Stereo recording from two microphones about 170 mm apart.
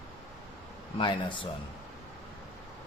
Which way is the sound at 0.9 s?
30° left (ahead or behind).